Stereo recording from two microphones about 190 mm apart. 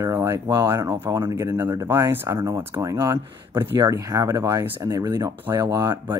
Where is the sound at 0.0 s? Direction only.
15° right (ahead or behind).